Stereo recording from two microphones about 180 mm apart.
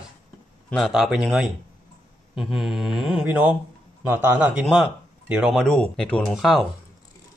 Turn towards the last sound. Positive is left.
turn(degrees=0)  # may be behind; listen again after turning